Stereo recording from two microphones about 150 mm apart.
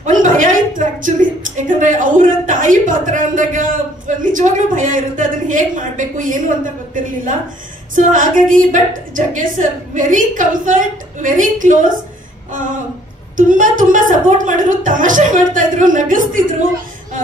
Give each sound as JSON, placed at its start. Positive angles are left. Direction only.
{"t": 0.0, "sound": "a sound", "side_deg": -60}
{"t": 7.9, "sound": "a woman's voice", "side_deg": -60}
{"t": 13.5, "sound": "a woman's voice", "side_deg": -60}